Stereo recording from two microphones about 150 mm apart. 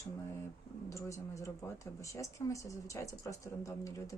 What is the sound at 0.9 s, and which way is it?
Speech, 20° left (ahead or behind).